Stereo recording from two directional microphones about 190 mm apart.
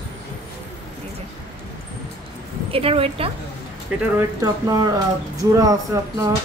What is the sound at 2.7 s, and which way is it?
Speech, 30° right (ahead or behind).